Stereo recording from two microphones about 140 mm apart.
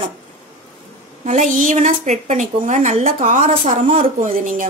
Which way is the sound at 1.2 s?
60° right (ahead or behind).